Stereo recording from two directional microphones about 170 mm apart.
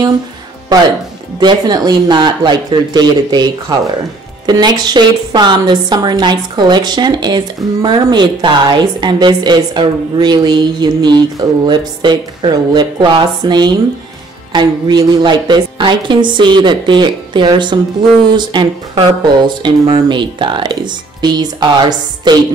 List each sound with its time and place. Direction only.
1.4 s a woman's voice: 25° right (ahead or behind)